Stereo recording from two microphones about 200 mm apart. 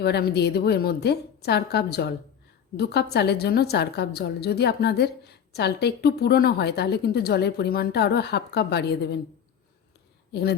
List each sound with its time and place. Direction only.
0.0 s a woman's voice: 55° left (ahead or behind)